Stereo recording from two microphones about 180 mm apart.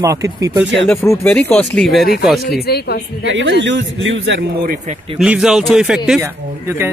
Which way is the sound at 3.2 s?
85° right.